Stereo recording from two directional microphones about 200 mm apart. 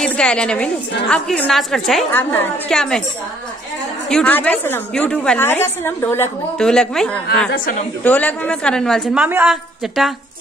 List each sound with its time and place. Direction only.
0.0 s a woman's voice: 5° left (ahead or behind)
4.1 s a woman's voice: 5° left (ahead or behind)
7.5 s a woman's voice: 45° left (ahead or behind)
8.0 s a woman's voice: 10° left (ahead or behind)